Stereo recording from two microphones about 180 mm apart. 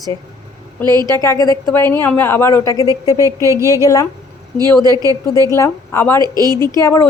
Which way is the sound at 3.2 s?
15° right (ahead or behind).